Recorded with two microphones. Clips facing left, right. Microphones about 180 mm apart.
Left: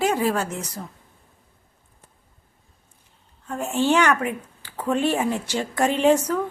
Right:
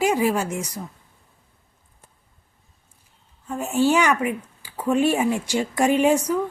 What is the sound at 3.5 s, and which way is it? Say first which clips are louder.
Speech: right 1 dB; 5° right (ahead or behind).